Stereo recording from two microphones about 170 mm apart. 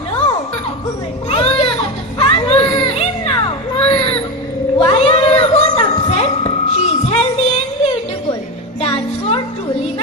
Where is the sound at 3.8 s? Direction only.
35° left (ahead or behind).